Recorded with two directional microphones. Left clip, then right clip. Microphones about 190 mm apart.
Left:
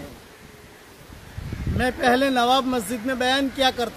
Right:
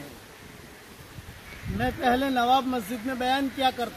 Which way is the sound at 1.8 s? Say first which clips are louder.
Left 5 dB; 20° left (ahead or behind).